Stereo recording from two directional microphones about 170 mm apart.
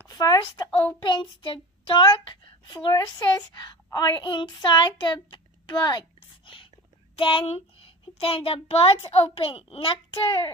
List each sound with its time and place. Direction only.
0.0 s a sound: 20° left (ahead or behind)
1.0 s child singing: 30° left (ahead or behind)
2.7 s a woman's voice: 25° left (ahead or behind)